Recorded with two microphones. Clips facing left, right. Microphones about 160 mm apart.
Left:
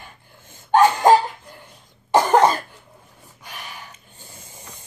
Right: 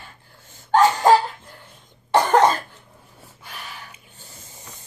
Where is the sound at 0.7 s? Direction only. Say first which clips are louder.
Left 1 dB; 15° left (ahead or behind).